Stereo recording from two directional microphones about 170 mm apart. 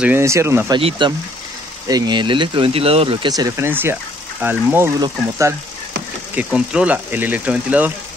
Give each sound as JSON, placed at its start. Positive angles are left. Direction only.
{"t": 0.0, "sound": "speech", "side_deg": -15}
{"t": 0.7, "sound": "speech", "side_deg": -30}
{"t": 6.3, "sound": "speech", "side_deg": -5}